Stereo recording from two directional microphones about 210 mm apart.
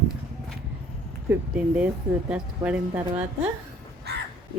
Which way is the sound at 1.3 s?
5° right (ahead or behind).